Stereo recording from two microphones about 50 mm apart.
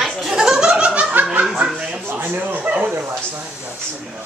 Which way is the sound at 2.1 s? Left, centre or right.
Right.